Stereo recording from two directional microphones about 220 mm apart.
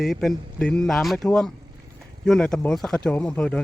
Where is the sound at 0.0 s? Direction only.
Centre (ahead or behind).